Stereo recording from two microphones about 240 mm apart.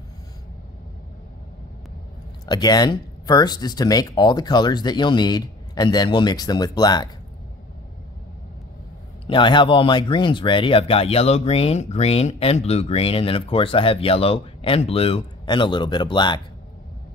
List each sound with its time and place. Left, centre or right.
2.4 s speech: centre
9.3 s speech: centre